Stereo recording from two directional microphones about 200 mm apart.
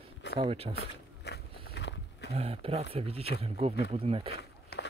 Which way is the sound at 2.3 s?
30° right (ahead or behind).